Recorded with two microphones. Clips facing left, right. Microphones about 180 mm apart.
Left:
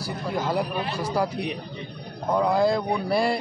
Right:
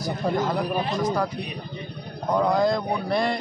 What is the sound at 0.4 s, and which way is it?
A man's voice, 10° left (ahead or behind).